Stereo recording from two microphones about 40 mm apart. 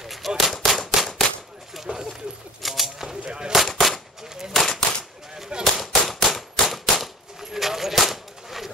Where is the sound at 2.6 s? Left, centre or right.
Centre.